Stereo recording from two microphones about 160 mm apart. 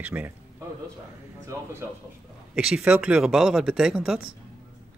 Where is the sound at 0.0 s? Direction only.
10° right (ahead or behind).